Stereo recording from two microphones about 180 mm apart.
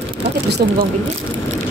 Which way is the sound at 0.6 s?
55° right (ahead or behind).